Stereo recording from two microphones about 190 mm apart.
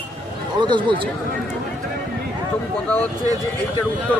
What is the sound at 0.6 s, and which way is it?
Speech, 25° right (ahead or behind).